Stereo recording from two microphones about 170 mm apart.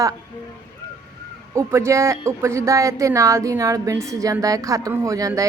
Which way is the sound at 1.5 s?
15° right (ahead or behind).